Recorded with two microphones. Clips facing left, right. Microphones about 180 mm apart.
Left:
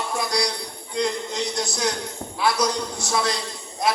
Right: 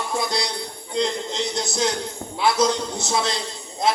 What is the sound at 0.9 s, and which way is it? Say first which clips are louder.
A man's voice: right 1 dB; 25° right (ahead or behind).